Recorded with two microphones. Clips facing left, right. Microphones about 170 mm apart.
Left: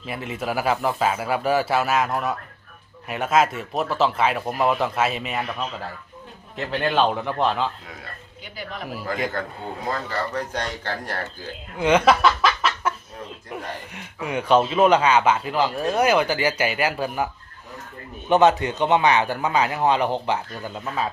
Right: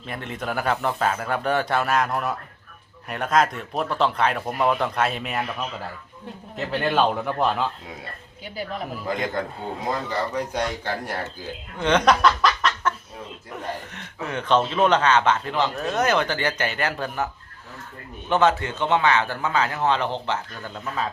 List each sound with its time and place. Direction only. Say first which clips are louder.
0.0 s speech: left 2 dB; 5° left (ahead or behind)
9.1 s a man's voice: even; 20° right (ahead or behind)
11.8 s chuckle: left 1 dB; 10° left (ahead or behind)
13.5 s speech: right 2 dB; 10° left (ahead or behind)
18.3 s speech: left 3 dB; 15° left (ahead or behind)